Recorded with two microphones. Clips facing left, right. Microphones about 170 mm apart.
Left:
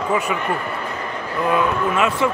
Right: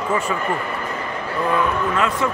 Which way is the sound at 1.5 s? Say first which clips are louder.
Left 2 dB; 20° left (ahead or behind).